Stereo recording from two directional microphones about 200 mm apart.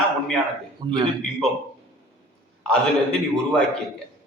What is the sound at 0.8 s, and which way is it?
Speech, 25° right (ahead or behind).